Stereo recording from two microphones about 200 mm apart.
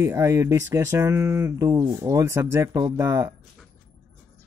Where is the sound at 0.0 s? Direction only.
15° right (ahead or behind).